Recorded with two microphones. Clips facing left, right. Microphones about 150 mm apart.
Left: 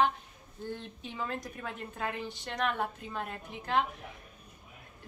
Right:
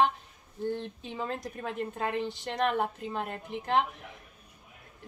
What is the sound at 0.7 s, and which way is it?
A woman's voice, 30° right (ahead or behind).